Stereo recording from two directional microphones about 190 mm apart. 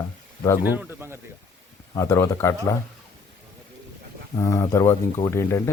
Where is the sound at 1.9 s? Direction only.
15° left (ahead or behind).